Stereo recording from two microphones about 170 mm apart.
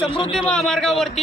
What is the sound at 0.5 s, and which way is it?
Speech, 5° left (ahead or behind).